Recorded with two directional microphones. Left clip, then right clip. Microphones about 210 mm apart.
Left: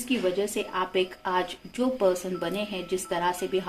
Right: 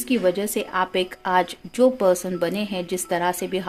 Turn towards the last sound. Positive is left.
turn(degrees=-50)  # may be behind; listen again after turning